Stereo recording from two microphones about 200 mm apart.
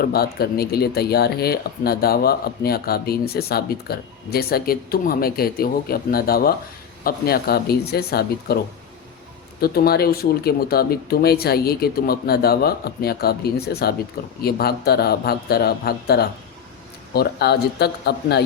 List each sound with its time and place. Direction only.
0.0 s speech: 50° left (ahead or behind)
9.6 s speech: 50° left (ahead or behind)